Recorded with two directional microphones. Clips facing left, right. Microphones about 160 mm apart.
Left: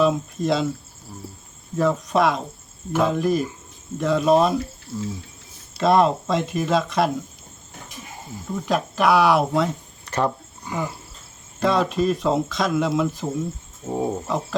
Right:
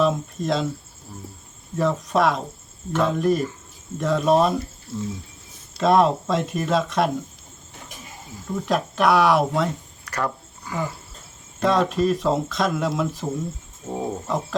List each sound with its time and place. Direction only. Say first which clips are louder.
0.0 s speech: left 2 dB; centre (ahead or behind)
1.7 s speech: left 1 dB; centre (ahead or behind)
8.6 s speech: even; centre (ahead or behind)
10.1 s a sound: left 4 dB; 25° left (ahead or behind)
11.6 s speech: even; centre (ahead or behind)
13.8 s wild animals: left 3 dB; 10° left (ahead or behind)